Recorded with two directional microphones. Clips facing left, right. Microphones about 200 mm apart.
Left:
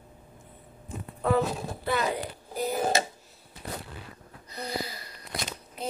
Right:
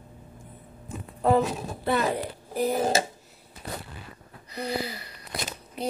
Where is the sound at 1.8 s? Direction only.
35° right (ahead or behind).